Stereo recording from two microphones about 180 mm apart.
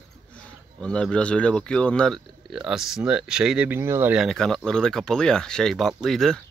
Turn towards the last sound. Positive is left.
turn(degrees=0)  # may be behind; listen again after turning